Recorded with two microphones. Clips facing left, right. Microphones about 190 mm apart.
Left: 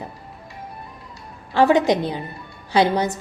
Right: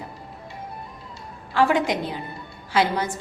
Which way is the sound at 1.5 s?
25° left (ahead or behind).